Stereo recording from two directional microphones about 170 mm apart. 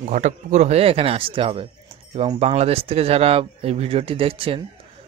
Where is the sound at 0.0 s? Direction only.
45° right (ahead or behind).